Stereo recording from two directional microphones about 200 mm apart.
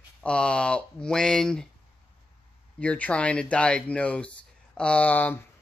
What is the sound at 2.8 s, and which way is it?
Speech, 5° left (ahead or behind).